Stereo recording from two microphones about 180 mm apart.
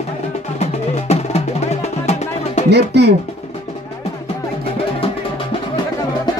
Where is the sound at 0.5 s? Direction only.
35° left (ahead or behind).